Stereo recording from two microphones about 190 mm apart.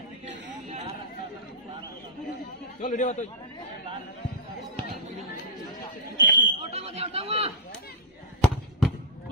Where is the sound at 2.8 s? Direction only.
40° left (ahead or behind).